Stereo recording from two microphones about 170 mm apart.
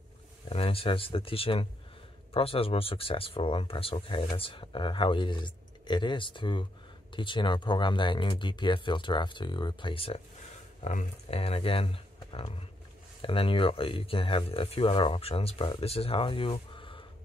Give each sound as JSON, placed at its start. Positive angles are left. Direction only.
{"t": 0.5, "sound": "speech", "side_deg": 35}